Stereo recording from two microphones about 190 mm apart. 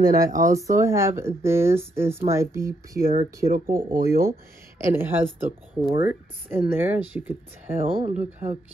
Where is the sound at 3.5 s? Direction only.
50° right (ahead or behind).